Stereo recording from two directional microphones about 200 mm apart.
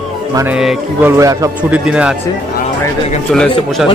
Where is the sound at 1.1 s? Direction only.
15° right (ahead or behind).